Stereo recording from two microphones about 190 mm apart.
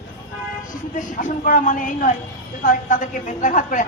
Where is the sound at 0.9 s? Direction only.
45° left (ahead or behind).